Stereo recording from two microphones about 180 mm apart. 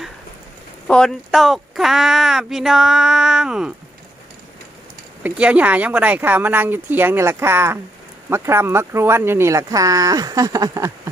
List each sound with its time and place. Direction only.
0.9 s speech: 5° left (ahead or behind)
5.2 s speech: 10° right (ahead or behind)